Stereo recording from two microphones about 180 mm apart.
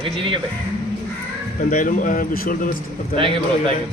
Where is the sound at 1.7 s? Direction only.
50° left (ahead or behind).